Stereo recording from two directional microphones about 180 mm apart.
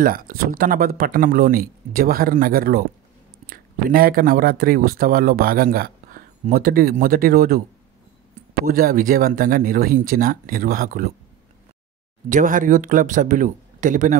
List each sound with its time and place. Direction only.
0.0 s speech: 55° right (ahead or behind)
8.6 s speech: 55° right (ahead or behind)
12.3 s speech: 45° right (ahead or behind)